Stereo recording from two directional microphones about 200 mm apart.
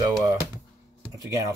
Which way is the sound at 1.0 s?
15° right (ahead or behind).